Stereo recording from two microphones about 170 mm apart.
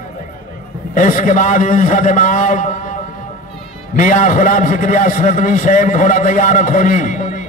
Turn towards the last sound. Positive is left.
turn(degrees=50)  # may be behind; listen again after turning